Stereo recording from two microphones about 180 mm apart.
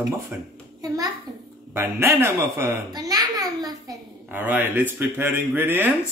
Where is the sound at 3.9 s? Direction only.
10° right (ahead or behind).